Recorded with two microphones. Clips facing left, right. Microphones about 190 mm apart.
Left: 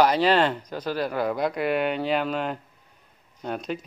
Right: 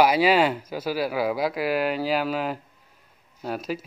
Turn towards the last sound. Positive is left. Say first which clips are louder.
# right 1 dB
turn(degrees=-5)  # may be behind; listen again after turning